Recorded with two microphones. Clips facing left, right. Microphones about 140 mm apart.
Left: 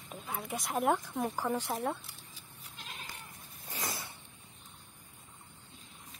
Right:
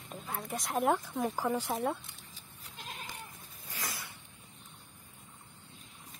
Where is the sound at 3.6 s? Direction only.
25° left (ahead or behind).